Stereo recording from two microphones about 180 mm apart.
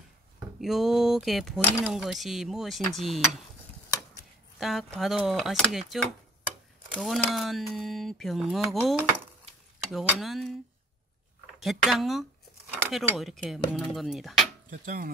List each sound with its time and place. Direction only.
0.6 s speech: centre (ahead or behind)
4.6 s speech: centre (ahead or behind)
7.0 s speech: centre (ahead or behind)
11.6 s speech: centre (ahead or behind)
12.7 s a sound: 5° left (ahead or behind)
13.2 s speech: centre (ahead or behind)
14.7 s speech: 50° right (ahead or behind)